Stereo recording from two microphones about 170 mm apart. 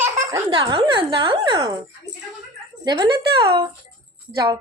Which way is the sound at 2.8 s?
25° right (ahead or behind).